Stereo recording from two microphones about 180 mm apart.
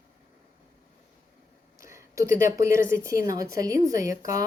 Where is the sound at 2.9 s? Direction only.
15° right (ahead or behind).